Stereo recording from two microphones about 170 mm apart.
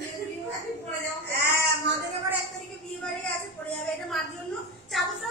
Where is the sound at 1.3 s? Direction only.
75° right (ahead or behind).